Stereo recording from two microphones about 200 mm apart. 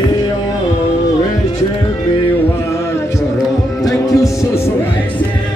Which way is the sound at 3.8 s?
15° left (ahead or behind).